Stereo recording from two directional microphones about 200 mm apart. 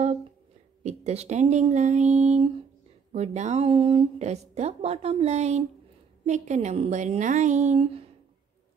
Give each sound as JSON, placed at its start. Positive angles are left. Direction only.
{"t": 0.8, "sound": "speech", "side_deg": -35}